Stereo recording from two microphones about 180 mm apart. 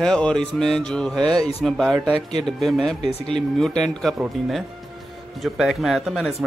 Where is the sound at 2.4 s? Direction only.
Centre (ahead or behind).